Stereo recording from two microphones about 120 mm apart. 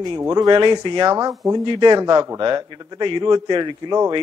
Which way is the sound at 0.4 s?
40° right (ahead or behind).